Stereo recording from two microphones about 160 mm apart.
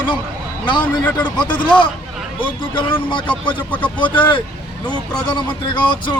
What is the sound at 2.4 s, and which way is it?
Speech, 30° left (ahead or behind).